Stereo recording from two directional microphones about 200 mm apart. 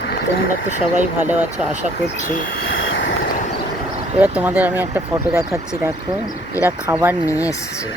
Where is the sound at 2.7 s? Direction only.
70° left (ahead or behind).